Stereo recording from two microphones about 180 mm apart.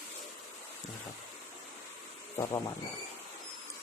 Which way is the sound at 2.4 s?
20° left (ahead or behind).